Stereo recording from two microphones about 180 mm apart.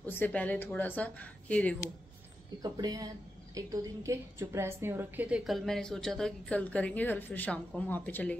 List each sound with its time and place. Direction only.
0.0 s speech: 10° left (ahead or behind)
2.6 s a woman's voice: 20° right (ahead or behind); by 8.4 s 5° left (ahead or behind)